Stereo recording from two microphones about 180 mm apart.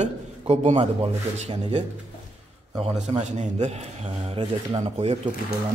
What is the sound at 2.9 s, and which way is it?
Speech, 40° right (ahead or behind).